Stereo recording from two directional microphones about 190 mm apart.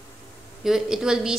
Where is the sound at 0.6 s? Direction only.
5° right (ahead or behind).